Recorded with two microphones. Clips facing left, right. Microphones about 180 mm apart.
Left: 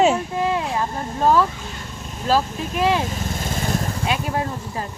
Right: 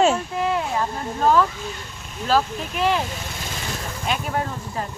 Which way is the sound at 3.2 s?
45° left (ahead or behind).